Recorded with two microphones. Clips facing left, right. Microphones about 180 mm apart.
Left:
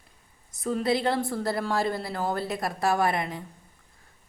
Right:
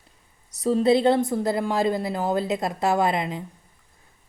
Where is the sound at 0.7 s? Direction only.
25° right (ahead or behind).